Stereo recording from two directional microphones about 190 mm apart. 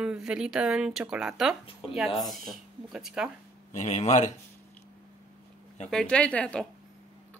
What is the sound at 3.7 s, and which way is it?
Speech, 35° left (ahead or behind).